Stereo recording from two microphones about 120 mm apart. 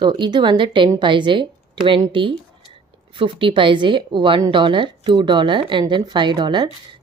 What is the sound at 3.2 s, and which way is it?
A woman's voice, 45° right (ahead or behind).